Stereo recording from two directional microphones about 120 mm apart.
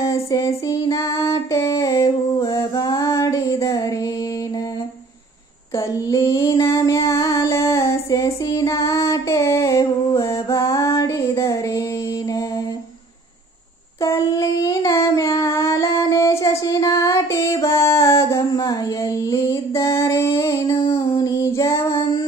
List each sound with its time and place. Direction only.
0.0 s female singing: 25° left (ahead or behind)
2.0 s music: 35° left (ahead or behind)
5.8 s a sound: 30° left (ahead or behind)
6.6 s child singing: 25° left (ahead or behind)
7.1 s female singing: 25° left (ahead or behind)
14.0 s child singing: 25° left (ahead or behind)
21.2 s female singing: 30° left (ahead or behind)